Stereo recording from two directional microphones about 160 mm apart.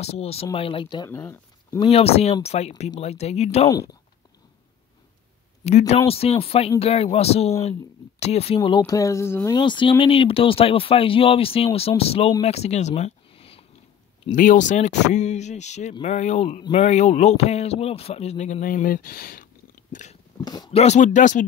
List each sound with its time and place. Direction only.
0.0 s speech: 40° left (ahead or behind)
1.1 s speech: 15° left (ahead or behind)
1.8 s a man's voice: 40° left (ahead or behind)
3.6 s speech: 20° left (ahead or behind)
5.6 s speech: 40° left (ahead or behind)
8.5 s speech: 25° left (ahead or behind)
9.6 s speech: 30° left (ahead or behind)
12.4 s a sound: 40° left (ahead or behind)
14.3 s a man's voice: 55° left (ahead or behind)
20.4 s speech: 25° left (ahead or behind)
20.7 s a man's voice: 45° left (ahead or behind)